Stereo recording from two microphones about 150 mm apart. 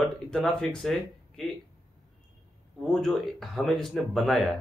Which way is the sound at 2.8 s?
Centre (ahead or behind).